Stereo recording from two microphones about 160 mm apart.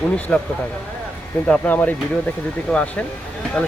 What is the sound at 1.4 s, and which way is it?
Speech, 10° left (ahead or behind).